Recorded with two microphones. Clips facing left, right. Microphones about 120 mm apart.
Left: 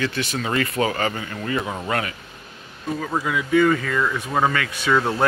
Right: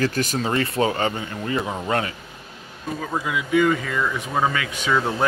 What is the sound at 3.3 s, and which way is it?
Speech, 15° right (ahead or behind).